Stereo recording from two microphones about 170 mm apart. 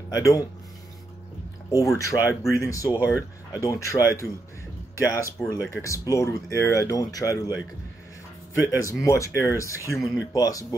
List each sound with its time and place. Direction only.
0.1 s speech: 20° left (ahead or behind)
1.7 s speech: 20° left (ahead or behind)
3.0 s speech: 10° right (ahead or behind)
3.5 s speech: 20° left (ahead or behind)
8.5 s speech: 20° left (ahead or behind)
9.9 s speech: centre (ahead or behind)
10.3 s speech: 20° left (ahead or behind)